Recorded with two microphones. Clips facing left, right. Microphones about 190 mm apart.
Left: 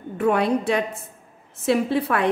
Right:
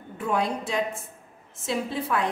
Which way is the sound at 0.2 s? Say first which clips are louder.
Left 7 dB; 65° left (ahead or behind).